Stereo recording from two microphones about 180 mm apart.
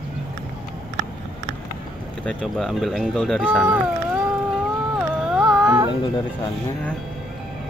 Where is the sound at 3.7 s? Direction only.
5° right (ahead or behind).